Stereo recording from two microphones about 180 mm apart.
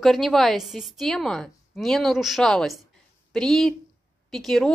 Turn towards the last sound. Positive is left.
turn(degrees=0)  # may be behind; listen again after turning